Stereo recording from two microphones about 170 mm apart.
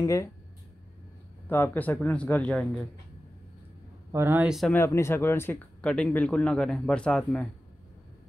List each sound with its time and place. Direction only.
0.0 s speech: 20° left (ahead or behind)
1.5 s speech: 15° left (ahead or behind)
4.1 s speech: 15° right (ahead or behind)
4.7 s speech: 15° left (ahead or behind)